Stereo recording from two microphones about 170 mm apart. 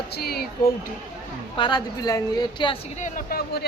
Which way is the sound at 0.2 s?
65° left (ahead or behind).